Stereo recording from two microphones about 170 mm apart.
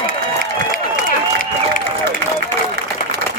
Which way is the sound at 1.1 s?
55° left (ahead or behind).